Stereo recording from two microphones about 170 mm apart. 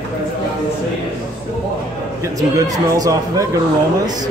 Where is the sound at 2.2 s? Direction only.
20° right (ahead or behind).